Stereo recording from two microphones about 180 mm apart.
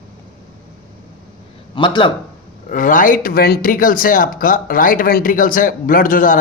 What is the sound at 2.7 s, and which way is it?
Speech, 45° left (ahead or behind).